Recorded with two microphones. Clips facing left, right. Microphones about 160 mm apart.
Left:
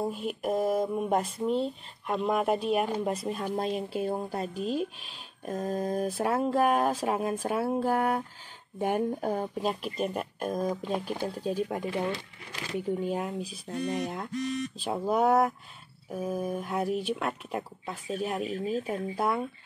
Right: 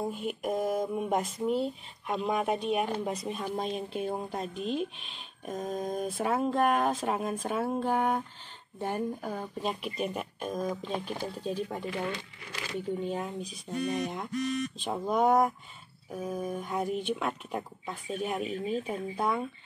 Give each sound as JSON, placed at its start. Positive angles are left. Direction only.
{"t": 0.1, "sound": "speech", "side_deg": 0}
{"t": 9.2, "sound": "speech", "side_deg": 30}
{"t": 9.6, "sound": "speech", "side_deg": 0}
{"t": 10.5, "sound": "speech", "side_deg": 10}